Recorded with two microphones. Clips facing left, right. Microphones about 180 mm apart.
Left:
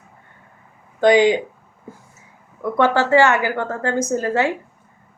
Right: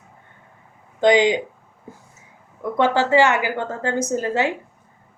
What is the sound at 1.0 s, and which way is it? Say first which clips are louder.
Speech: left 2 dB; 20° right (ahead or behind).